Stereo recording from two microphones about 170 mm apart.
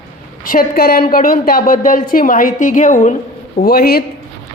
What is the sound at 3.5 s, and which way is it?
Speech, 65° left (ahead or behind).